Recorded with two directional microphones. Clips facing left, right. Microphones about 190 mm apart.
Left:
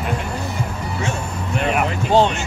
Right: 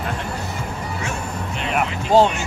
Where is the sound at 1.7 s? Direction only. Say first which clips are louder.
Right 1 dB; 5° right (ahead or behind).